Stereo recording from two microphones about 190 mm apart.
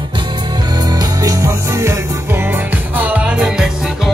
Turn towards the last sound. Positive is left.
turn(degrees=-5)  # may be behind; listen again after turning